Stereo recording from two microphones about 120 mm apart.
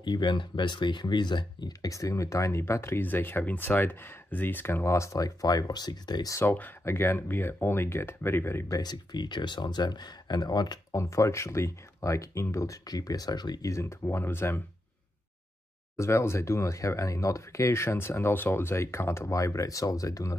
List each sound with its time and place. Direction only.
0.0 s speech: 40° left (ahead or behind)
1.7 s speech: 25° left (ahead or behind)
6.3 s speech: 15° left (ahead or behind)
16.0 s speech: 25° left (ahead or behind)